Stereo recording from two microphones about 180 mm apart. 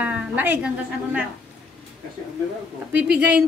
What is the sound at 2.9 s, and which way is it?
Speech, 70° right (ahead or behind).